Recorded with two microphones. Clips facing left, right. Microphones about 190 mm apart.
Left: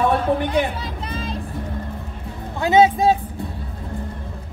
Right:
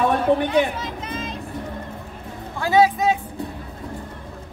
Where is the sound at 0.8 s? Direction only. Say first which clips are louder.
Even; 35° left (ahead or behind).